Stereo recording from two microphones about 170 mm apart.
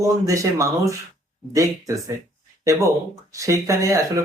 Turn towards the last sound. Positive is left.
turn(degrees=-20)  # may be behind; listen again after turning